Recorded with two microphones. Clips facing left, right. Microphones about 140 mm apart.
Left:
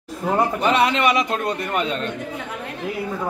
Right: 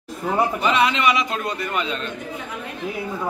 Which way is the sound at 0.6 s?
50° left (ahead or behind).